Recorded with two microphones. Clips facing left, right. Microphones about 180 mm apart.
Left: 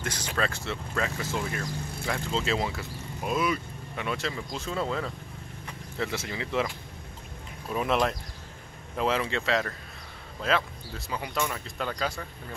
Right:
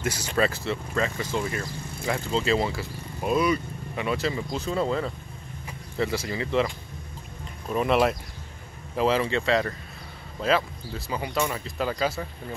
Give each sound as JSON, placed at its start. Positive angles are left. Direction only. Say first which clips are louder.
{"t": 0.0, "sound": "speech", "louder": "right 5 dB", "side_deg": -10}
{"t": 7.7, "sound": "speech", "louder": "right 4 dB", "side_deg": 0}